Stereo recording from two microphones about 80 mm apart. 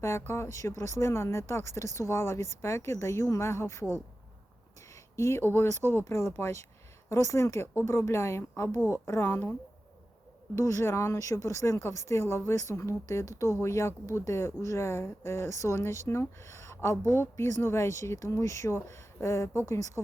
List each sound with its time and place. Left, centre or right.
0.0 s speech: left
5.1 s speech: left
6.1 s speech: left
10.5 s speech: left